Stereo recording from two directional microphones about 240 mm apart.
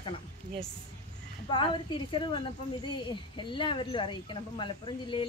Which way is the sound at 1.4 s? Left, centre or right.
Left.